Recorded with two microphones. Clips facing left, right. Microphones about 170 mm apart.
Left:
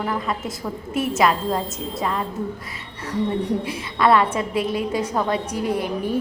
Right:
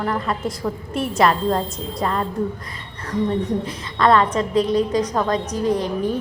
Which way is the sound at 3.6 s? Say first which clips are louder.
Right 1 dB; 10° left (ahead or behind).